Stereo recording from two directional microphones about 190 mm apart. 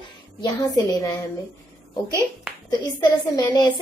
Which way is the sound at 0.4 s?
15° left (ahead or behind).